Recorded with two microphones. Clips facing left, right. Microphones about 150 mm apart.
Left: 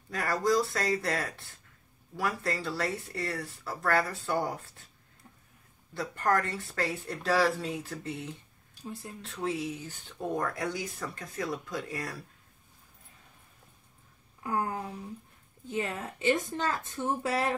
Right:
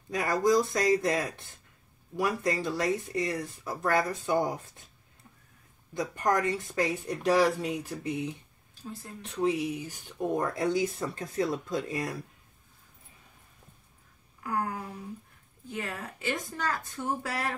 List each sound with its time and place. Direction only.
0.1 s speech: 15° right (ahead or behind)
5.9 s speech: 15° right (ahead or behind)
14.4 s a sound: 25° left (ahead or behind)
15.7 s speech: 20° left (ahead or behind)